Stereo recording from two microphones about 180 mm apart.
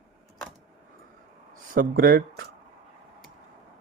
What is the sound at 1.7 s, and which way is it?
Speech, 50° right (ahead or behind).